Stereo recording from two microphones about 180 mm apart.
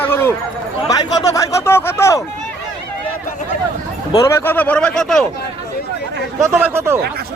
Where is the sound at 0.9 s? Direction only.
20° left (ahead or behind).